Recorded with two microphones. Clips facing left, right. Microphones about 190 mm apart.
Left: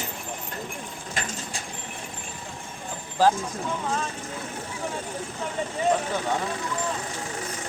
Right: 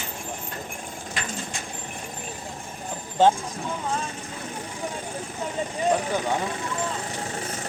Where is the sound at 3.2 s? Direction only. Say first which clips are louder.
Right 2 dB; 25° right (ahead or behind).